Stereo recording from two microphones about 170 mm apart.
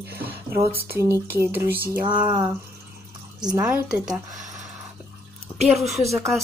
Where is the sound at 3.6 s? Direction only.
10° right (ahead or behind).